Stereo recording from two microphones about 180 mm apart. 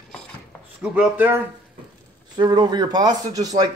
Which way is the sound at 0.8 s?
10° right (ahead or behind).